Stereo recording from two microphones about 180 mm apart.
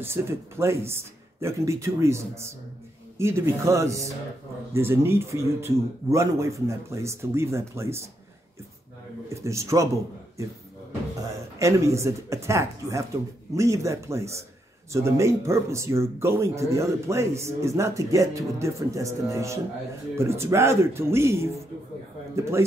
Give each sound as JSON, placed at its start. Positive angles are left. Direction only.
{"t": 0.0, "sound": "speech", "side_deg": -15}
{"t": 9.3, "sound": "speech", "side_deg": -15}
{"t": 11.5, "sound": "speech", "side_deg": -15}